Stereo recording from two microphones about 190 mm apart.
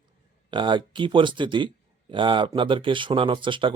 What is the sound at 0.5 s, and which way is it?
Speech, 25° right (ahead or behind).